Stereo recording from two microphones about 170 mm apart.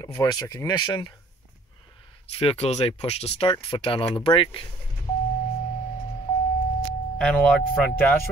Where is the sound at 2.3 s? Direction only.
35° left (ahead or behind).